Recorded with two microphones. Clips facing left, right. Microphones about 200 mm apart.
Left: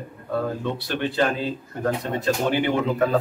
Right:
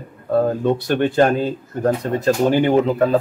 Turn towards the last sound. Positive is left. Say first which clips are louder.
# right 5 dB
turn(degrees=-40)  # may be behind; listen again after turning